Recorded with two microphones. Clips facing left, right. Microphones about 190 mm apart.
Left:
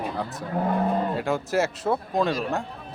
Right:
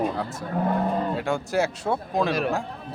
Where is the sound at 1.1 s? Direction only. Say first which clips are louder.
Even; centre (ahead or behind).